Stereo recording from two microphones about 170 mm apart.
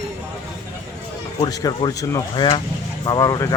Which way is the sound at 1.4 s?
20° left (ahead or behind).